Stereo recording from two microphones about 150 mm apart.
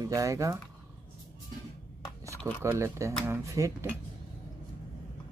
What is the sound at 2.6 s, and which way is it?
Speech, 20° right (ahead or behind).